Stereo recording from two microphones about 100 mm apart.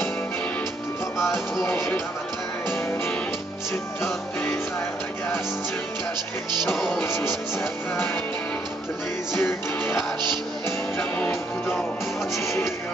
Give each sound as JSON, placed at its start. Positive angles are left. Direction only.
{"t": 1.1, "sound": "music", "side_deg": -5}
{"t": 1.6, "sound": "music", "side_deg": 25}
{"t": 4.0, "sound": "music", "side_deg": 25}
{"t": 6.8, "sound": "music", "side_deg": 20}
{"t": 9.3, "sound": "music", "side_deg": 25}
{"t": 12.4, "sound": "music", "side_deg": 25}